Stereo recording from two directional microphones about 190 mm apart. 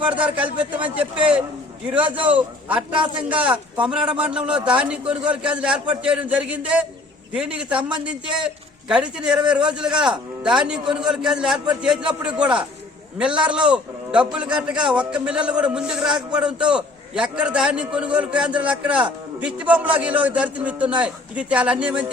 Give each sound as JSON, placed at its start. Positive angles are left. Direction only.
{"t": 0.1, "sound": "speech", "side_deg": -5}
{"t": 2.9, "sound": "a man's voice", "side_deg": -25}
{"t": 3.4, "sound": "a man's voice", "side_deg": -5}
{"t": 8.9, "sound": "a man's voice", "side_deg": -5}